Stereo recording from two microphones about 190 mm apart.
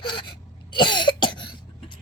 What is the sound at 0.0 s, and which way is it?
Cough, 25° left (ahead or behind).